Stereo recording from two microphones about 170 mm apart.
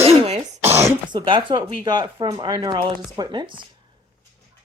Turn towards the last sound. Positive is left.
turn(degrees=-30)  # may be behind; listen again after turning